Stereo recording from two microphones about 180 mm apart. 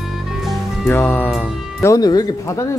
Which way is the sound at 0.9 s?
10° left (ahead or behind).